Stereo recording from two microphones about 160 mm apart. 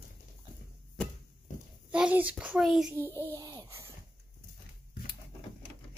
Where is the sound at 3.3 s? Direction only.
20° right (ahead or behind).